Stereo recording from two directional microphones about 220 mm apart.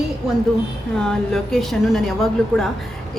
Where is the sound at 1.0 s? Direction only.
5° left (ahead or behind).